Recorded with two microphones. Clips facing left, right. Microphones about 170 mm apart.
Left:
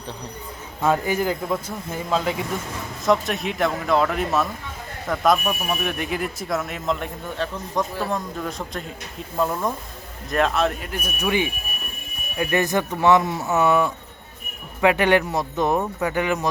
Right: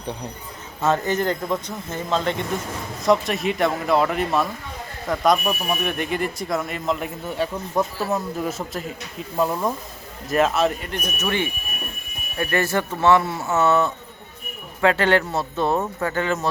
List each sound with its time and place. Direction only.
0.9 s a man's voice: 10° left (ahead or behind)